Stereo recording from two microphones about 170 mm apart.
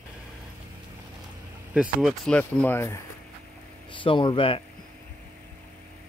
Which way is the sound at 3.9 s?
30° left (ahead or behind).